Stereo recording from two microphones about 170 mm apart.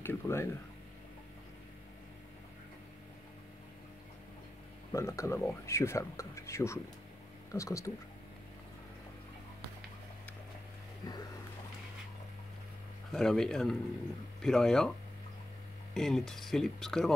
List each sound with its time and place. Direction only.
0.0 s speech: 15° left (ahead or behind)
4.9 s speech: 15° left (ahead or behind)
13.1 s speech: 5° left (ahead or behind)
15.9 s speech: centre (ahead or behind)